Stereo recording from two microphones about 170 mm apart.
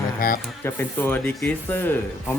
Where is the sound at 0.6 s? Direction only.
10° left (ahead or behind).